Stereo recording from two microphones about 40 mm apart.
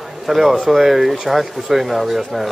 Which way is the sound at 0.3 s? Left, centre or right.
Centre.